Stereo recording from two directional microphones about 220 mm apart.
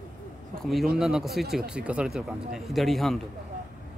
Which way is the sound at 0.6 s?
Centre (ahead or behind).